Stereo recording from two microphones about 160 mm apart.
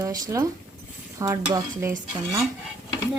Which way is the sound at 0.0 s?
20° right (ahead or behind).